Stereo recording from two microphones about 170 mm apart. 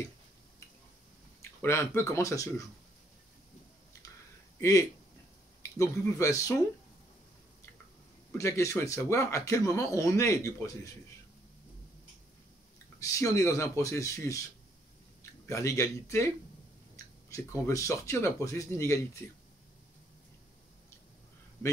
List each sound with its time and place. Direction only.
1.6 s speech: 15° left (ahead or behind)
4.6 s speech: 20° left (ahead or behind)
8.3 s speech: 15° left (ahead or behind)
13.0 s speech: 20° left (ahead or behind)
15.4 s speech: 20° left (ahead or behind)